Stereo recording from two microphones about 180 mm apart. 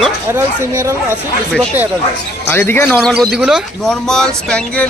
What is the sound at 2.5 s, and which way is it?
Speech, 10° left (ahead or behind).